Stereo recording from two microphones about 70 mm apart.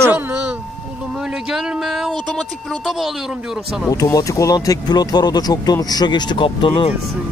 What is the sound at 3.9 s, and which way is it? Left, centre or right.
Speech, left.